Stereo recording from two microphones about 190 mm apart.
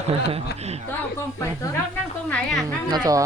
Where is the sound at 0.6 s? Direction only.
35° right (ahead or behind).